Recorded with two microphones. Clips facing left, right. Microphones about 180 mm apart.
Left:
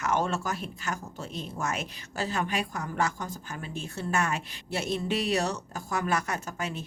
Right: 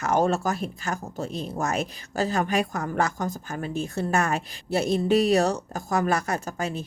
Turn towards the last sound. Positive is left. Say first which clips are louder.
# right 5 dB
turn(degrees=-35)  # may be behind; listen again after turning